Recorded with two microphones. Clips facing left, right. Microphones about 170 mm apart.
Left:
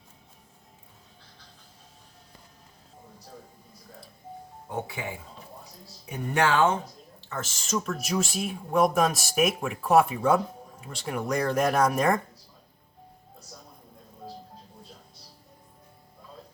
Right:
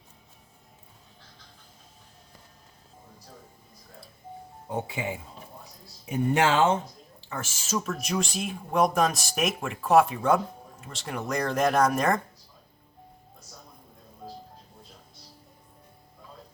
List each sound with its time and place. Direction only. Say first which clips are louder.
4.9 s speech: right 3 dB; 20° right (ahead or behind)
6.3 s speech: even; 25° right (ahead or behind)
7.3 s speech: left 1 dB; 10° right (ahead or behind)